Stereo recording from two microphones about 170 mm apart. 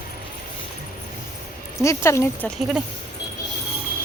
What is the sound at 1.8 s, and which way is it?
Speech, 15° left (ahead or behind).